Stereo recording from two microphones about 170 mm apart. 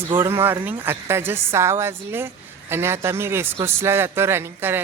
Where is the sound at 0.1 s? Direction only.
15° right (ahead or behind).